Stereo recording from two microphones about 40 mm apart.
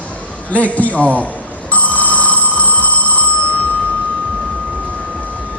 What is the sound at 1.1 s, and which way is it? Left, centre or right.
Telephone bell ringing, left.